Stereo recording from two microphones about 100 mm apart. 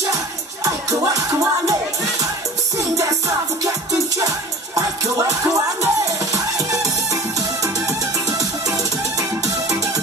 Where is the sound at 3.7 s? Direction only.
35° right (ahead or behind).